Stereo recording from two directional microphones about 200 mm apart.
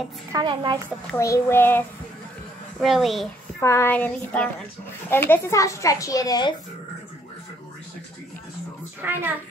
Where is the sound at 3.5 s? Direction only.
15° left (ahead or behind).